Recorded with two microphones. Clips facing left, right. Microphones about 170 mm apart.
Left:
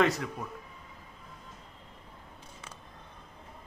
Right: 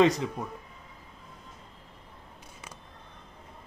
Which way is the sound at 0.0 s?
20° right (ahead or behind).